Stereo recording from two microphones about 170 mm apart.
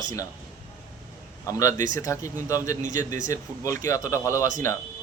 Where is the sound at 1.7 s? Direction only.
50° right (ahead or behind).